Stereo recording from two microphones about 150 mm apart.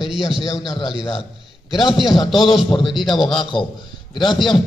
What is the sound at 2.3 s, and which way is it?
A man's voice, 35° left (ahead or behind).